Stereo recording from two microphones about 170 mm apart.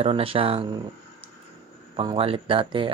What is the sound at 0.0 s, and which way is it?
Speech, 35° right (ahead or behind).